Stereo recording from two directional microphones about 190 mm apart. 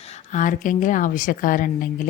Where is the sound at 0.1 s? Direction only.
40° left (ahead or behind).